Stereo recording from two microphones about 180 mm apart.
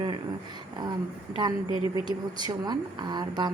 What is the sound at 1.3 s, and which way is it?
A woman's voice, 25° right (ahead or behind).